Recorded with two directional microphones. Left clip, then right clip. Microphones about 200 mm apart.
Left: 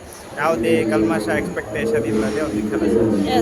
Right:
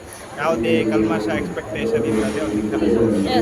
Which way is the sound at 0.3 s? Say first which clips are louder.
Left 1 dB; 20° left (ahead or behind).